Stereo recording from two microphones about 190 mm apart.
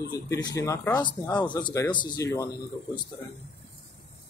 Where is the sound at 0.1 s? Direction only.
20° left (ahead or behind).